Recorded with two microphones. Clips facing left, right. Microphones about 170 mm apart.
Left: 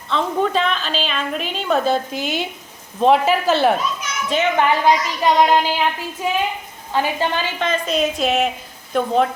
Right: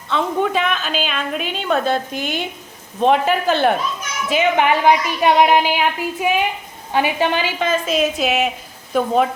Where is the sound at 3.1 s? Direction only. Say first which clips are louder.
Left 1 dB; centre (ahead or behind).